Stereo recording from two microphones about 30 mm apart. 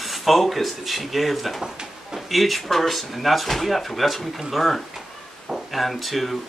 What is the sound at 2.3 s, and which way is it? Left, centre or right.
Speech, centre.